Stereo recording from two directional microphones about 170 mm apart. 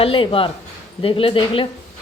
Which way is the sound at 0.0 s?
30° left (ahead or behind).